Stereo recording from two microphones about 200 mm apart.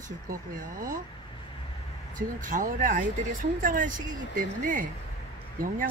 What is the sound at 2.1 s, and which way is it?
Speech, 40° right (ahead or behind).